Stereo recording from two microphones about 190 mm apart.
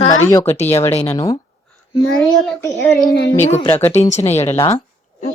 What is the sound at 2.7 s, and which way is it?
Speech, 5° left (ahead or behind).